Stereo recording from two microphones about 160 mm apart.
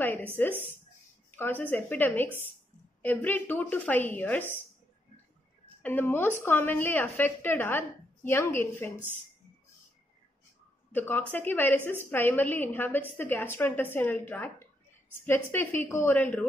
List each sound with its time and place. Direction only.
0.0 s a sound: 10° left (ahead or behind)
1.3 s a woman's voice: 10° left (ahead or behind)
5.8 s a woman's voice: 10° left (ahead or behind)
10.9 s a woman's voice: 10° left (ahead or behind)